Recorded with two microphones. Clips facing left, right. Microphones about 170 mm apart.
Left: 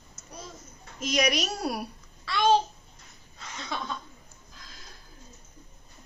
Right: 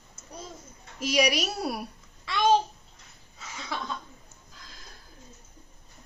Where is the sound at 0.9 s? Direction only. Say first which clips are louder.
Right 1 dB; 10° right (ahead or behind).